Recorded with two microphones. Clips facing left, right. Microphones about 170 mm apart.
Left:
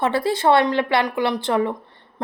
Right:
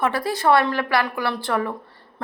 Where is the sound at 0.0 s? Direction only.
25° left (ahead or behind).